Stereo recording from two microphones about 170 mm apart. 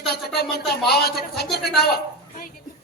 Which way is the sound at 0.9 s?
70° left (ahead or behind).